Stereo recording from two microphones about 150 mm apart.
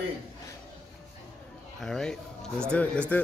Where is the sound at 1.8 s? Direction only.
5° left (ahead or behind).